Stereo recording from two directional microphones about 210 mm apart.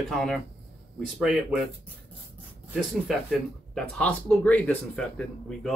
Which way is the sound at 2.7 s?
5° right (ahead or behind).